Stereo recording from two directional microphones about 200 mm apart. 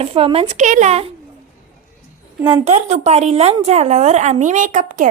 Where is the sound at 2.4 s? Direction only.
30° right (ahead or behind).